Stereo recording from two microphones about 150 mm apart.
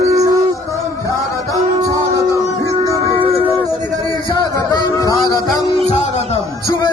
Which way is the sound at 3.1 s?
35° right (ahead or behind).